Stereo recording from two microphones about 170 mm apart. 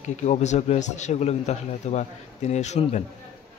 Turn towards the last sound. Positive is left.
turn(degrees=40)  # may be behind; listen again after turning